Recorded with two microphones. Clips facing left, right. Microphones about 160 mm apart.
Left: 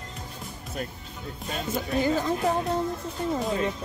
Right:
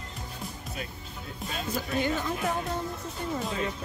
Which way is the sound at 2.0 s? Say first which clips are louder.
Left 5 dB; 35° left (ahead or behind).